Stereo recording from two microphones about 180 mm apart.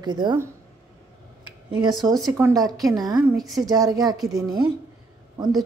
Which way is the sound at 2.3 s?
15° right (ahead or behind).